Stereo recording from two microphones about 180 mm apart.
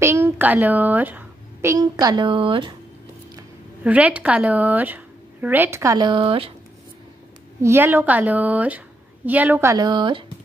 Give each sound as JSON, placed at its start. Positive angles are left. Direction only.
{"t": 0.0, "sound": "a woman's voice", "side_deg": -15}
{"t": 3.8, "sound": "a woman's voice", "side_deg": -10}
{"t": 7.6, "sound": "a woman's voice", "side_deg": -15}